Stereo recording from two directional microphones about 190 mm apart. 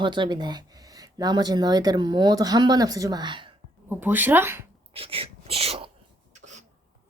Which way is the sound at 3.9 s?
10° right (ahead or behind).